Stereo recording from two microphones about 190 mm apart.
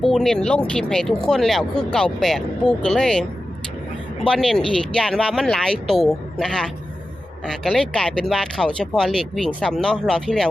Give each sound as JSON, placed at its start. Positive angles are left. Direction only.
{"t": 0.0, "sound": "speech", "side_deg": 0}
{"t": 4.3, "sound": "speech", "side_deg": 5}